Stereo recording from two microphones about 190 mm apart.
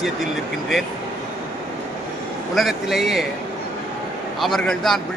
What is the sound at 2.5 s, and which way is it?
Speech, centre (ahead or behind).